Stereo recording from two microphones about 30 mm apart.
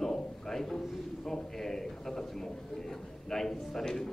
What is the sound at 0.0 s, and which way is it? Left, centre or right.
A man's voice, centre.